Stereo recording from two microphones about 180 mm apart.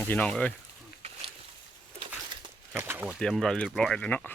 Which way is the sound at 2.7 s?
10° right (ahead or behind).